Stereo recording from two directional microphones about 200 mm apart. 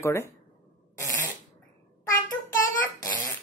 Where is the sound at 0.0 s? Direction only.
15° left (ahead or behind).